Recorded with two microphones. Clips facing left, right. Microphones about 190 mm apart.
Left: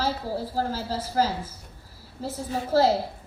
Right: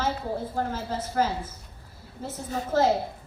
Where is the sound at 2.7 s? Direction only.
35° left (ahead or behind).